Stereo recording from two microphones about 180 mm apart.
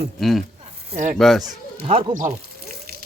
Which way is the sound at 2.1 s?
45° right (ahead or behind).